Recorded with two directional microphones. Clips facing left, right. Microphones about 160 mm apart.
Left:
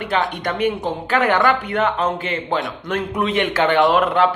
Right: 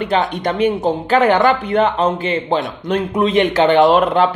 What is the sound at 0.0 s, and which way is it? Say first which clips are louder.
A man's voice: right 4 dB; 25° right (ahead or behind).